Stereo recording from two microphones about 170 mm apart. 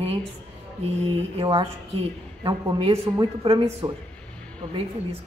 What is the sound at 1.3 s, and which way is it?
A woman's voice, 25° right (ahead or behind).